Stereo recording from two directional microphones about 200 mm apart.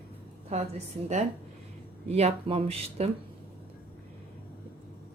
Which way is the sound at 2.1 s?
30° right (ahead or behind).